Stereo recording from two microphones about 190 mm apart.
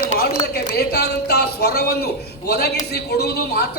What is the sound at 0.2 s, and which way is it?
Speech, 55° left (ahead or behind).